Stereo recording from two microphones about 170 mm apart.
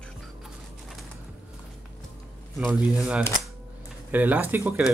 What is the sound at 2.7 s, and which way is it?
Speech, 5° right (ahead or behind).